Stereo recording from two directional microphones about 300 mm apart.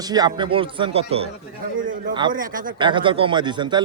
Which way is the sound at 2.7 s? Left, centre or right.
Centre.